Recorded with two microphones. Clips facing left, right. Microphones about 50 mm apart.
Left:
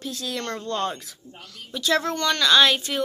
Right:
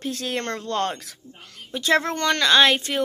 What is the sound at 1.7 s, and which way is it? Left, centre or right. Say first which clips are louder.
Speech: right 2 dB; right.